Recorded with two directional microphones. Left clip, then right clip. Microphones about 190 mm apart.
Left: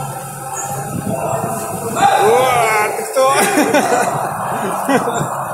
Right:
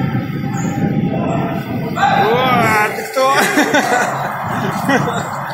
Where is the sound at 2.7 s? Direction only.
Centre (ahead or behind).